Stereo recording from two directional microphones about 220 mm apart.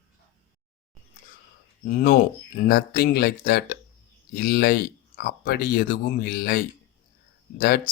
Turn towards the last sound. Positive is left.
turn(degrees=40)  # may be behind; listen again after turning